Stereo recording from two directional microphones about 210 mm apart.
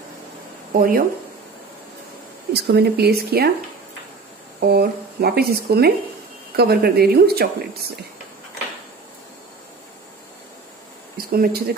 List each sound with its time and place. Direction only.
0.7 s speech: 45° right (ahead or behind)
2.5 s speech: 50° right (ahead or behind)
4.6 s speech: 50° right (ahead or behind)
11.1 s speech: 45° right (ahead or behind)